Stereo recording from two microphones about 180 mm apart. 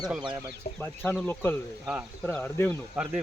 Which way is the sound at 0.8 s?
10° left (ahead or behind).